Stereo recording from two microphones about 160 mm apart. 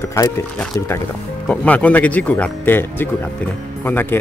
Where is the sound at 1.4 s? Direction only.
10° left (ahead or behind).